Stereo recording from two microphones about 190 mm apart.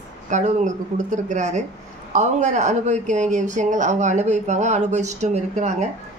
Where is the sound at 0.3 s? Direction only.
40° right (ahead or behind).